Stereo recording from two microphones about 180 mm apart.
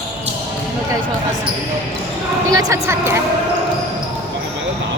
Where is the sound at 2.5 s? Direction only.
15° right (ahead or behind).